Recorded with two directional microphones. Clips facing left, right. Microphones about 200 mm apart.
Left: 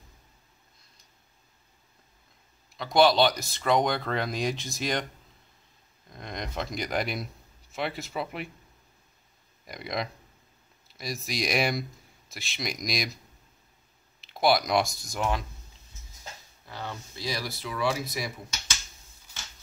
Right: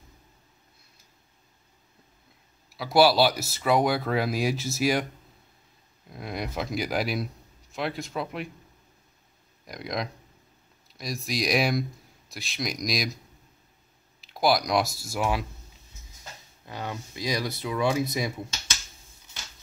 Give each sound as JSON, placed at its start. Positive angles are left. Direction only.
{"t": 2.7, "sound": "speech", "side_deg": -5}
{"t": 6.0, "sound": "speech", "side_deg": -5}
{"t": 9.7, "sound": "speech", "side_deg": 0}
{"t": 14.2, "sound": "speech", "side_deg": 0}
{"t": 16.6, "sound": "speech", "side_deg": -15}